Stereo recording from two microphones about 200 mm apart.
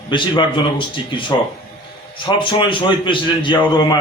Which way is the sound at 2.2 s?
25° left (ahead or behind).